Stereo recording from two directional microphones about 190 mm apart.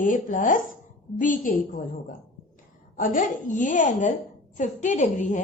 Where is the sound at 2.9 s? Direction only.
45° left (ahead or behind).